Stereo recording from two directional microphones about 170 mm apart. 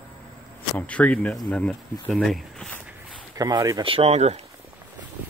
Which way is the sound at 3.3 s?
20° right (ahead or behind).